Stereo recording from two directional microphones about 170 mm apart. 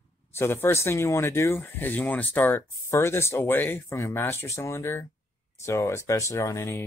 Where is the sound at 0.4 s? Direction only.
15° left (ahead or behind).